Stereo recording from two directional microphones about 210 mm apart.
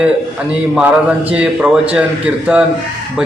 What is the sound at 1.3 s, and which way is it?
A man's voice, 5° right (ahead or behind).